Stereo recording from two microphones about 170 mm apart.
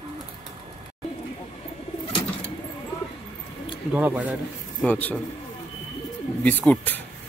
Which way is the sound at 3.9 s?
10° right (ahead or behind).